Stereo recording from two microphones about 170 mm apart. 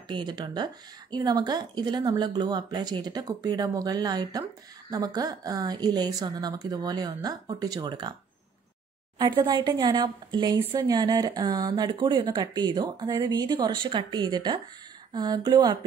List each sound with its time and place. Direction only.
0.1 s speech: 25° right (ahead or behind)
9.2 s speech: 25° right (ahead or behind)